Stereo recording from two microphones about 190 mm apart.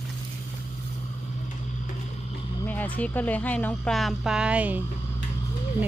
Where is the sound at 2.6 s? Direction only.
10° left (ahead or behind); by 4.8 s 5° right (ahead or behind).